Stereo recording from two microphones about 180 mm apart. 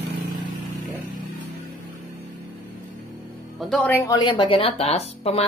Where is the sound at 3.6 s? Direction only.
5° left (ahead or behind).